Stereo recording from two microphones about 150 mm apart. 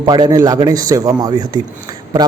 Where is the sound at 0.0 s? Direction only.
25° right (ahead or behind).